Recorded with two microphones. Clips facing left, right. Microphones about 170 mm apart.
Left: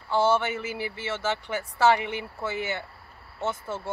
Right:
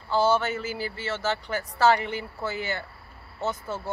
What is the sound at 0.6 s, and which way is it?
A man's voice, 10° left (ahead or behind).